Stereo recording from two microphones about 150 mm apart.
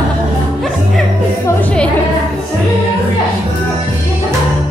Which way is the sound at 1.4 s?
10° left (ahead or behind).